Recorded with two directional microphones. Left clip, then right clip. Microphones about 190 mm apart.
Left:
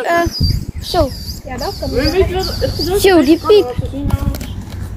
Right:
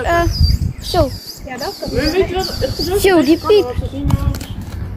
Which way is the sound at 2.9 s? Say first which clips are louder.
Left 2 dB; 15° left (ahead or behind).